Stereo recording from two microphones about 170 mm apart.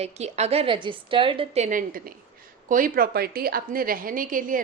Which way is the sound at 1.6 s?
55° right (ahead or behind).